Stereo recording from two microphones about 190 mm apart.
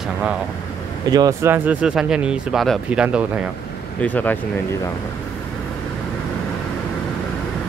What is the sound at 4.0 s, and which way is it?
Speech, 10° left (ahead or behind).